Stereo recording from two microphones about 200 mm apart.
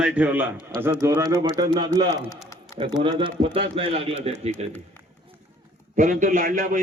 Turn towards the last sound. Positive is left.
turn(degrees=-40)  # may be behind; listen again after turning